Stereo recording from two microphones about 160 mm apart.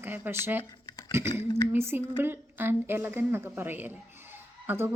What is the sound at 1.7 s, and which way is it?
Speech, 15° right (ahead or behind).